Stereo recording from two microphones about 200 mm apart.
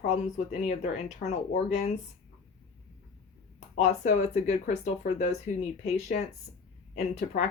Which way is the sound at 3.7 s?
35° left (ahead or behind).